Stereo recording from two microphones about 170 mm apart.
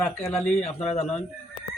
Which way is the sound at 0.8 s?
40° left (ahead or behind).